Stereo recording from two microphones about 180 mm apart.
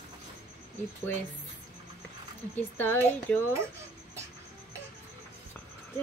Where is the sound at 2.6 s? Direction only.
10° left (ahead or behind).